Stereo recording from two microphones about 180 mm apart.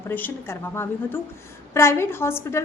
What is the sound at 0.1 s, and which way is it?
A woman's voice, 10° left (ahead or behind).